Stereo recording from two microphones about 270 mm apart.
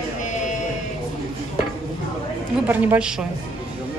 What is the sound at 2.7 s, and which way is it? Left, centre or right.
Speech, centre.